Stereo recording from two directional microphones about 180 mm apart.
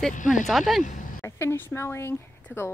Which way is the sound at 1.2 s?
15° left (ahead or behind).